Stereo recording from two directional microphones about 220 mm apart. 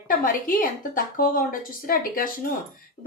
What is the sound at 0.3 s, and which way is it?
A woman's voice, 40° left (ahead or behind).